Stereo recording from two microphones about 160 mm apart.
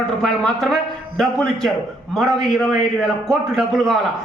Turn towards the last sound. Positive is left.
turn(degrees=0)  # may be behind; listen again after turning